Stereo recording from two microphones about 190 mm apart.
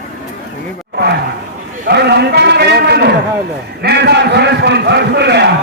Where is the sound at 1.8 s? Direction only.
60° right (ahead or behind).